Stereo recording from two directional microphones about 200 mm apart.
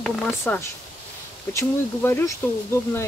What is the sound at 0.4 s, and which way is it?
Speech, 15° left (ahead or behind).